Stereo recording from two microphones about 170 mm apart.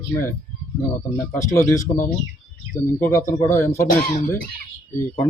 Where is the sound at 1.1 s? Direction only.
20° left (ahead or behind).